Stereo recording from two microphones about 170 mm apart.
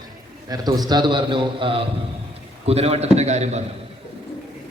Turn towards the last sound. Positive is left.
turn(degrees=-40)  # may be behind; listen again after turning